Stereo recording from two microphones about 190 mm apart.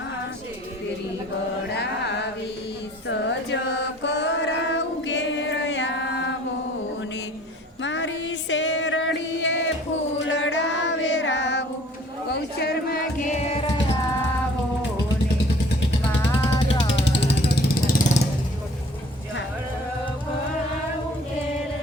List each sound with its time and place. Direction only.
1.7 s music: 65° left (ahead or behind)
7.8 s music: 75° left (ahead or behind)
10.2 s a sound: 75° left (ahead or behind)
12.3 s music: 55° left (ahead or behind)
13.3 s music: 35° left (ahead or behind)
17.1 s vehicle: 55° left (ahead or behind)